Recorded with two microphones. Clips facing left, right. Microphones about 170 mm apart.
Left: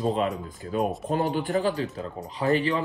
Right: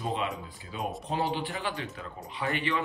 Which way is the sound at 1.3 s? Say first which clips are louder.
Left 9 dB; 45° left (ahead or behind).